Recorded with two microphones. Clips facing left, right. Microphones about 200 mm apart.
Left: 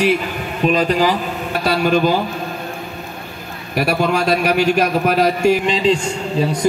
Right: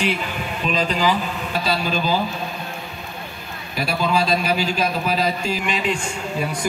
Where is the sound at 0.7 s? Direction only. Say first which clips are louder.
Left 5 dB; 55° left (ahead or behind).